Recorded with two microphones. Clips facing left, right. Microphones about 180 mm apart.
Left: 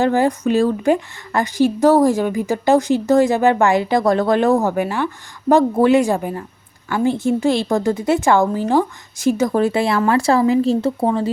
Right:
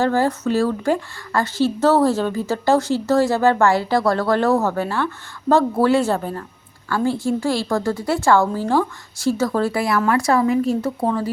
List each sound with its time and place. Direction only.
0.0 s a woman's voice: 15° left (ahead or behind)